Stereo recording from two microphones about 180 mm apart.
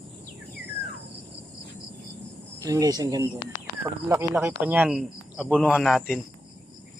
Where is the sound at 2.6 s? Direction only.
20° right (ahead or behind); by 6.1 s centre (ahead or behind).